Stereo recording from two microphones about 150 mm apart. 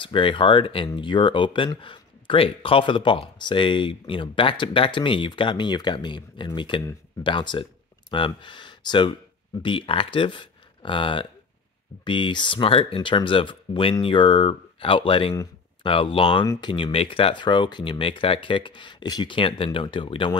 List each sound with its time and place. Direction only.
0.0 s speech: 35° left (ahead or behind)